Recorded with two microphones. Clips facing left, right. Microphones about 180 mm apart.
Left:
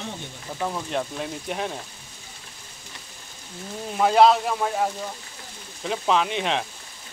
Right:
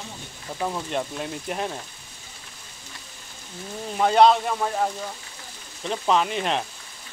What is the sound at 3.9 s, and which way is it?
Speech, centre (ahead or behind).